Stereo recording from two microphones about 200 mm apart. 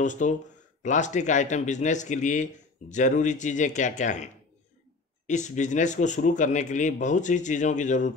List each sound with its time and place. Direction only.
0.0 s a man's voice: 40° left (ahead or behind)